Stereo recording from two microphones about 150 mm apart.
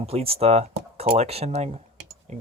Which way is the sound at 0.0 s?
40° right (ahead or behind).